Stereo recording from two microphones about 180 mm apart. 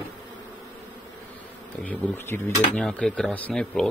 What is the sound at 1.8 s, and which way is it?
Dishes, 10° left (ahead or behind).